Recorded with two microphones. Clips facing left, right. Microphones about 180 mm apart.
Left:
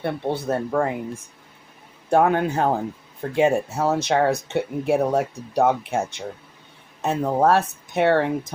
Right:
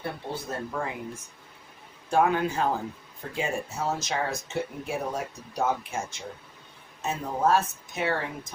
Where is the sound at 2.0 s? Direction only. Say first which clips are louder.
Left 5 dB; 60° left (ahead or behind).